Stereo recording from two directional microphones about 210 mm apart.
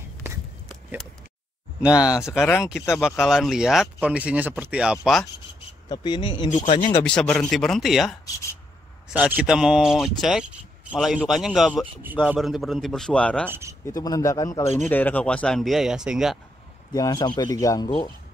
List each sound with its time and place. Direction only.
1.8 s a man's voice: 5° right (ahead or behind)
3.2 s a man's voice: centre (ahead or behind)
5.9 s speech: 20° left (ahead or behind)
6.5 s speech: 35° left (ahead or behind)
7.0 s a man's voice: 5° left (ahead or behind)
13.5 s speech: 15° right (ahead or behind)
13.8 s a man's voice: 15° left (ahead or behind); by 16.3 s 5° right (ahead or behind)
16.9 s speech: 20° left (ahead or behind)